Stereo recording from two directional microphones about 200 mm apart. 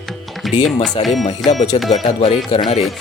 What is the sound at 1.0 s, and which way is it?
Speech, 25° left (ahead or behind).